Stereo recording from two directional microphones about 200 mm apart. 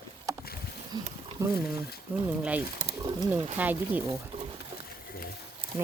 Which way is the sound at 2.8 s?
20° right (ahead or behind).